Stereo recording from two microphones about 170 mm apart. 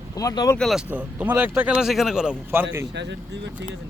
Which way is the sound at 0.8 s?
10° right (ahead or behind).